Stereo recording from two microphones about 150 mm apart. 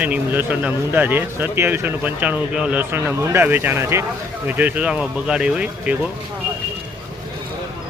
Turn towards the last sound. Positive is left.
turn(degrees=-5)  # may be behind; listen again after turning